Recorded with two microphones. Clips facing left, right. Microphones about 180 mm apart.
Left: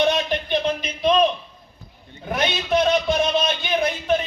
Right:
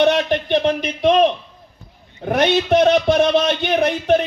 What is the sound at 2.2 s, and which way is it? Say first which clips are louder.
A man's voice: right 8 dB; 65° right (ahead or behind).